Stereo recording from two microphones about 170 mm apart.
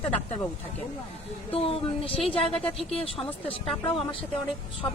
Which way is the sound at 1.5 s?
35° left (ahead or behind).